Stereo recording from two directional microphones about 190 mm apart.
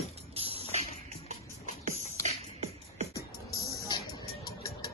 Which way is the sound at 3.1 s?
55° left (ahead or behind).